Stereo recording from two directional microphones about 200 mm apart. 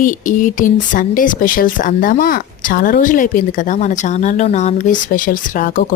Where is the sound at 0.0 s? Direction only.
40° left (ahead or behind).